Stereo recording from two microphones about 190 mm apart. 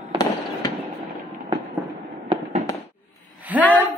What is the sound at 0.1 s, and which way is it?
Fireworks, 25° right (ahead or behind).